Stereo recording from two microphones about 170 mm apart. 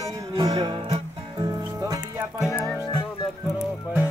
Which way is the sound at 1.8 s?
15° right (ahead or behind).